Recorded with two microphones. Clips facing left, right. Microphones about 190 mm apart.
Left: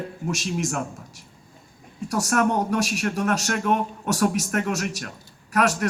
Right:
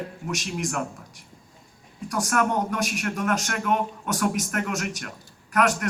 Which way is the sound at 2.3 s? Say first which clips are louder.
Left 3 dB; 30° left (ahead or behind).